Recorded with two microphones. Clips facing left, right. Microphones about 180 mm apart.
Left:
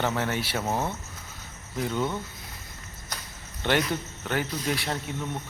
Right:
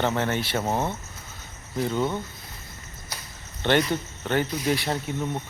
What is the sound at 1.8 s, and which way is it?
Speech, centre (ahead or behind).